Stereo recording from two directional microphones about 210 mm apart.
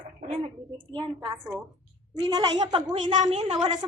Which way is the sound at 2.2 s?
20° right (ahead or behind).